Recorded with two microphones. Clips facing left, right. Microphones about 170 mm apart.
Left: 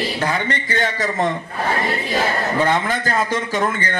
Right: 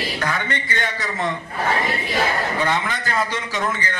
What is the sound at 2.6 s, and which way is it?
A man's voice, 45° left (ahead or behind).